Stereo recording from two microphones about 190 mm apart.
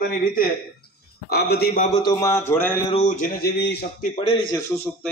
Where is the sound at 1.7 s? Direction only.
40° left (ahead or behind).